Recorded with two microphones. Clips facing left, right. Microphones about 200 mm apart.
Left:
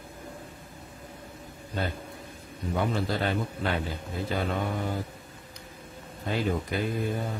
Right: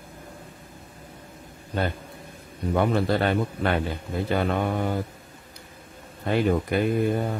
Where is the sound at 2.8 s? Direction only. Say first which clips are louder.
Right 6 dB; 65° right (ahead or behind).